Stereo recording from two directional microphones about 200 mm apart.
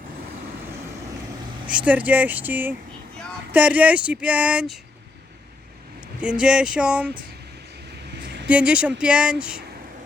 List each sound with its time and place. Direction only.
1.7 s speech: 5° right (ahead or behind)
6.1 s speech: 5° right (ahead or behind)
8.1 s a sound: 60° right (ahead or behind)
8.4 s speech: 5° right (ahead or behind)